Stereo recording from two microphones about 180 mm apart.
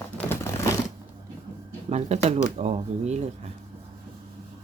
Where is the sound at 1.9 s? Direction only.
40° right (ahead or behind).